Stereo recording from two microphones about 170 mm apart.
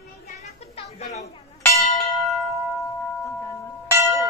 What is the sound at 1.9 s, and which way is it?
Bell, centre (ahead or behind).